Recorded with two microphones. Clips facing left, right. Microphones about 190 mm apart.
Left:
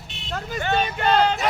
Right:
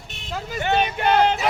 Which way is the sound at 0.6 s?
20° right (ahead or behind).